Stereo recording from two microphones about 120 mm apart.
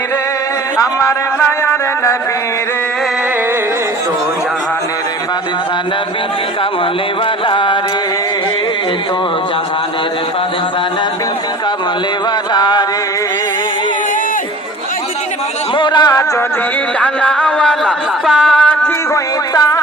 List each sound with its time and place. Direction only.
0.8 s a man's voice: 25° left (ahead or behind)
7.4 s music: 45° left (ahead or behind)
12.5 s a sound: 35° left (ahead or behind)
15.7 s music: 40° left (ahead or behind)
17.0 s music: 10° left (ahead or behind)
18.4 s a sound: 5° left (ahead or behind)
19.1 s music: 30° left (ahead or behind)